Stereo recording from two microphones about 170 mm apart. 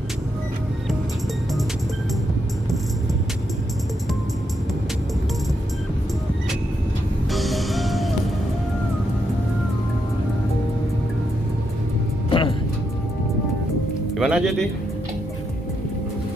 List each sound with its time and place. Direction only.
7.3 s music: centre (ahead or behind)
12.3 s music: 30° left (ahead or behind)
14.1 s music: 5° right (ahead or behind)